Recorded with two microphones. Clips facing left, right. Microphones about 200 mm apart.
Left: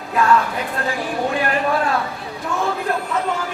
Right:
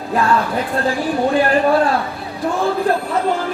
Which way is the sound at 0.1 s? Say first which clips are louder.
Even; 35° right (ahead or behind).